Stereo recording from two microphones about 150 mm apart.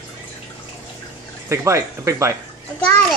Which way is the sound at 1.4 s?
20° right (ahead or behind).